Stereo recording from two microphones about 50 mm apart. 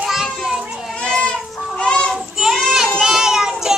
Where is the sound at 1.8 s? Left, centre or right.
Left.